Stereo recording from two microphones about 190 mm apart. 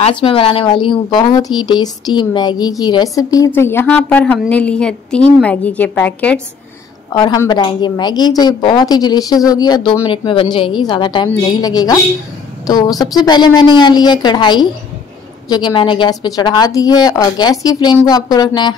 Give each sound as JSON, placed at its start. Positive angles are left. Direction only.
{"t": 0.0, "sound": "a woman's voice", "side_deg": 30}
{"t": 7.2, "sound": "a woman's voice", "side_deg": 20}